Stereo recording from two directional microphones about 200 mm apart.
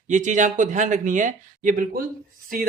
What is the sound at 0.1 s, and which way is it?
A man's voice, 40° right (ahead or behind).